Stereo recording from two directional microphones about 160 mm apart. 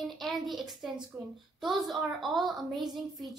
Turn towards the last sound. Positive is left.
turn(degrees=0)  # may be behind; listen again after turning